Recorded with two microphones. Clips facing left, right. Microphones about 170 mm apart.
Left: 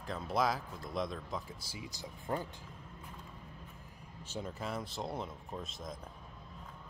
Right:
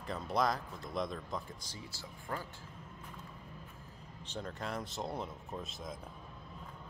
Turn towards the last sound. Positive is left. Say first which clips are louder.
# even
turn(degrees=0)  # may be behind; listen again after turning